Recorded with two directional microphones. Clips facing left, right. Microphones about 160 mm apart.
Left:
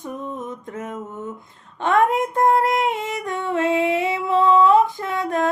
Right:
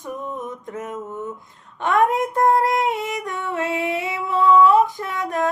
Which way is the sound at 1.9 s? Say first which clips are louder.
Even; 25° left (ahead or behind).